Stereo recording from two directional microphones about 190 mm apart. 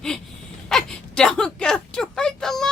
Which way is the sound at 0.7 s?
5° left (ahead or behind).